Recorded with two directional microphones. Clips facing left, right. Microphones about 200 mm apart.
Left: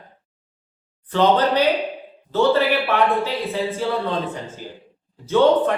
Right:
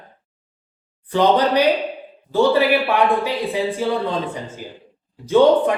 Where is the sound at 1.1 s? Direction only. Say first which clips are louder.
Right 1 dB; 15° right (ahead or behind).